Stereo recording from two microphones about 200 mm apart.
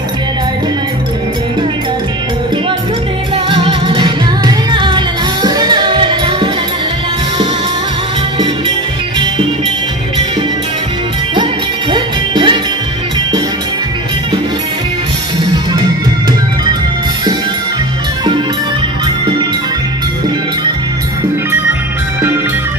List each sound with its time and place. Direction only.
3.4 s music: 25° right (ahead or behind)
11.9 s music: 25° right (ahead or behind)